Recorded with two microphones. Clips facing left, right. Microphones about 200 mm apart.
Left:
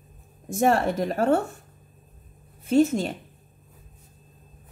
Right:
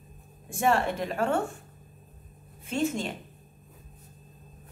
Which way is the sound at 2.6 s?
40° left (ahead or behind).